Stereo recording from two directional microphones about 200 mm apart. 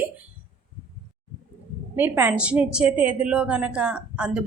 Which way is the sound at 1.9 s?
10° right (ahead or behind).